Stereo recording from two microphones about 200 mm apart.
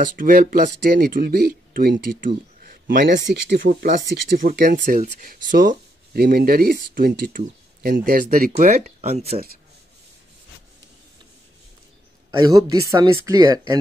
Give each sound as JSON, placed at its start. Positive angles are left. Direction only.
{"t": 0.1, "sound": "speech", "side_deg": -45}
{"t": 12.3, "sound": "speech", "side_deg": -20}